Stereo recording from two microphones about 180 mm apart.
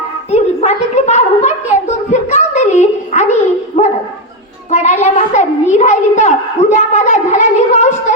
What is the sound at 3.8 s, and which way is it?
Dog, 40° left (ahead or behind).